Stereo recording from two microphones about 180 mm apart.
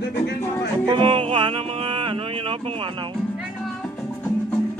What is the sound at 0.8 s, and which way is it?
Music, 25° right (ahead or behind).